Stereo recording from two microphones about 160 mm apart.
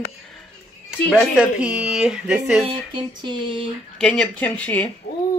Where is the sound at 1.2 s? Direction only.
5° right (ahead or behind).